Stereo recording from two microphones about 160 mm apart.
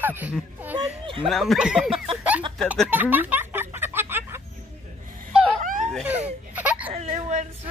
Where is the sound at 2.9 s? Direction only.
10° right (ahead or behind).